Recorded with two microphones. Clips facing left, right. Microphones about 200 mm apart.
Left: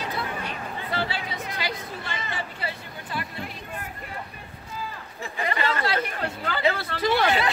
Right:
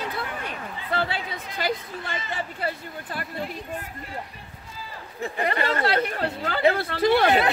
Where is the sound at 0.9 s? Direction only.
50° right (ahead or behind).